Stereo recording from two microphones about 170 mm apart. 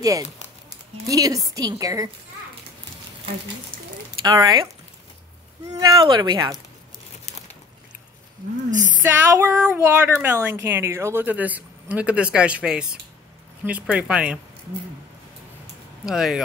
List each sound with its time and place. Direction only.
0.0 s a woman's voice: 20° right (ahead or behind)
4.4 s a woman's voice: 25° right (ahead or behind)
5.7 s a woman's voice: 20° right (ahead or behind)
8.6 s speech: 50° right (ahead or behind)
9.0 s a woman's voice: 15° right (ahead or behind)
16.1 s speech: centre (ahead or behind)